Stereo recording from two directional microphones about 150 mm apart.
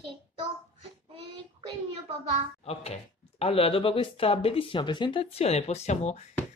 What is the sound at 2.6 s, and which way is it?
Speech, 45° left (ahead or behind).